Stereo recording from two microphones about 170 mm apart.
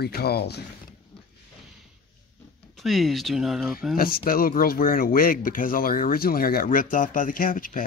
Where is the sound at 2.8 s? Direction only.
Centre (ahead or behind).